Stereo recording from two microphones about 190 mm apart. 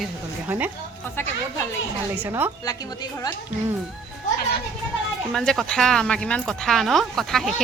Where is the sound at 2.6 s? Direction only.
20° left (ahead or behind).